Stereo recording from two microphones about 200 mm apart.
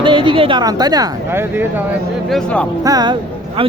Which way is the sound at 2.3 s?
5° left (ahead or behind).